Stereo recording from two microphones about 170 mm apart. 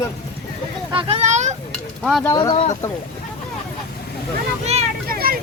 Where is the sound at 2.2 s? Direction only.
20° left (ahead or behind).